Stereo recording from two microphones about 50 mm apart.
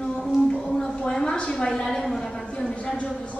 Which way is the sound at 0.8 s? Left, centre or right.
Centre.